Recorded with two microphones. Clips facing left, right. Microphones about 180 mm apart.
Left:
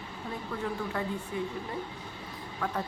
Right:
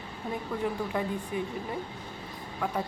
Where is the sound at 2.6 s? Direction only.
10° right (ahead or behind).